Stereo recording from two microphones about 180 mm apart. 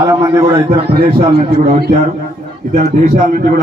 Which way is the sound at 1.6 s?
50° right (ahead or behind).